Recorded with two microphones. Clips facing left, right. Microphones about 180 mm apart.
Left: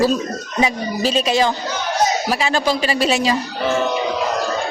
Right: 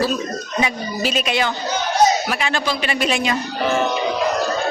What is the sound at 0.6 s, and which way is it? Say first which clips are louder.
Speech: left 4 dB; 30° left (ahead or behind).